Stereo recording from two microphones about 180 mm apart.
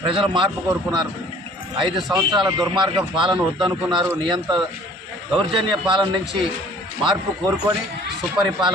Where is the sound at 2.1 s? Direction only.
25° right (ahead or behind).